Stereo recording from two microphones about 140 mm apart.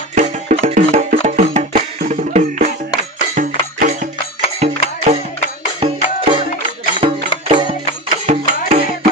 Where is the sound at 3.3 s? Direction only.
65° right (ahead or behind).